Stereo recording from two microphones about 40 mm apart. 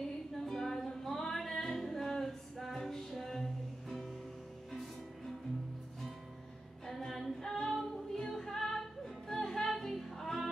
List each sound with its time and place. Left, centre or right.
0.3 s music: centre
6.9 s female singing: centre